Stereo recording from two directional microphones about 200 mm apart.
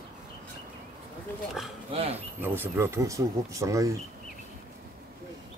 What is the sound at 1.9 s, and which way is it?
Speech, 30° right (ahead or behind).